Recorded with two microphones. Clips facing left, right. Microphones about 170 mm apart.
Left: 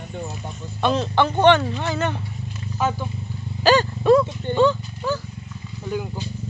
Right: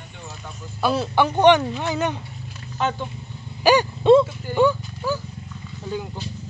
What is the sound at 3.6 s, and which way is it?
Dog, 15° right (ahead or behind).